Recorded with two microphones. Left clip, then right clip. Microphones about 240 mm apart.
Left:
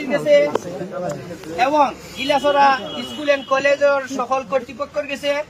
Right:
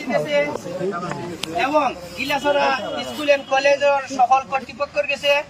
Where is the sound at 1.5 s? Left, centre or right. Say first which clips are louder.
Left 3 dB; left.